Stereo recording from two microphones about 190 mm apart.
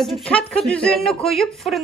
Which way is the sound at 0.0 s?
5° left (ahead or behind).